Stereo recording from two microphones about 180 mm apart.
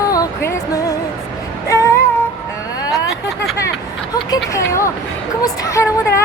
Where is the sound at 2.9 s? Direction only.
20° left (ahead or behind).